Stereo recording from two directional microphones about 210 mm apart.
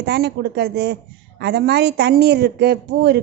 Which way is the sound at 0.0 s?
50° right (ahead or behind).